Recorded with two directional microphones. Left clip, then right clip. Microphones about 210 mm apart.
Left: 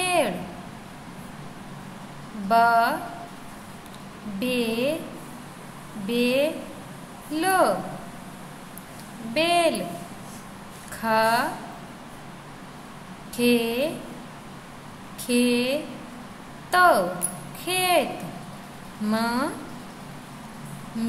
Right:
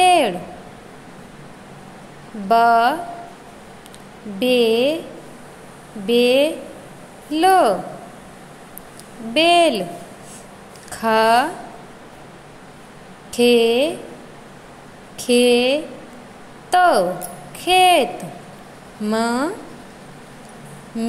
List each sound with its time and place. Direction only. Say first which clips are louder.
0.0 s a sound: right 9 dB; 25° right (ahead or behind)
2.4 s speech: right 5 dB; 25° right (ahead or behind)
4.4 s speech: right 10 dB; 25° right (ahead or behind)
6.0 s speech: right 8 dB; 25° right (ahead or behind)
9.3 s speech: right 7 dB; 25° right (ahead or behind)
10.9 s speech: right 6 dB; 25° right (ahead or behind)
13.4 s speech: right 9 dB; 25° right (ahead or behind)
15.1 s speech: right 9 dB; 25° right (ahead or behind)
19.0 s speech: right 5 dB; 20° right (ahead or behind)